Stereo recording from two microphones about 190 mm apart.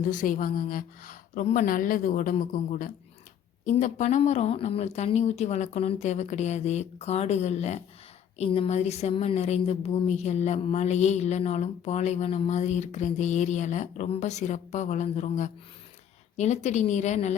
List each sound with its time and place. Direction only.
0.1 s a woman's voice: 45° left (ahead or behind)